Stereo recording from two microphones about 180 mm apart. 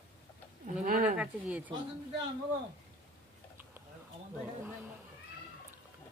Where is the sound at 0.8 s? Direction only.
50° right (ahead or behind).